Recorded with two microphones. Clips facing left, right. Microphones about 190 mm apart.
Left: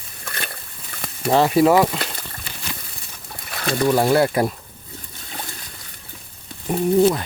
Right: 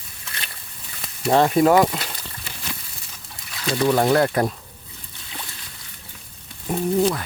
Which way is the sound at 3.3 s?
60° left (ahead or behind).